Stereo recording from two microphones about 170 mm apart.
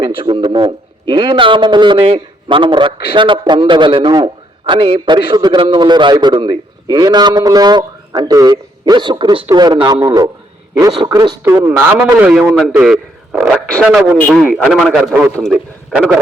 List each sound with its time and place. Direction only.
0.0 s a man's voice: 30° right (ahead or behind); by 15.5 s centre (ahead or behind)